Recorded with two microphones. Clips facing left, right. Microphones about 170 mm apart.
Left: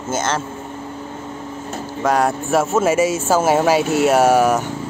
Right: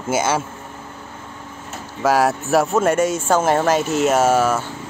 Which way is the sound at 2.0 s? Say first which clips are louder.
Right 1 dB; centre (ahead or behind).